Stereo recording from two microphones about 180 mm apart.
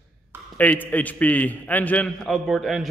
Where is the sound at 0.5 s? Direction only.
10° left (ahead or behind).